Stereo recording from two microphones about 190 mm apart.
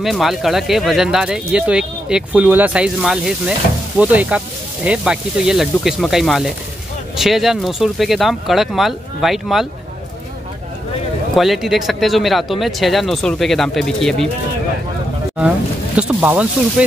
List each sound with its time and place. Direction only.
0.0 s speech: centre (ahead or behind)
11.3 s speech: centre (ahead or behind)
16.0 s speech: 10° right (ahead or behind)